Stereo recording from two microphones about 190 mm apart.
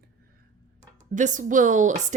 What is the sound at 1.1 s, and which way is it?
Speech, 40° right (ahead or behind).